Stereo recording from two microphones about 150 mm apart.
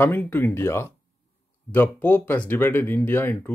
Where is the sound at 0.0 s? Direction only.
15° left (ahead or behind).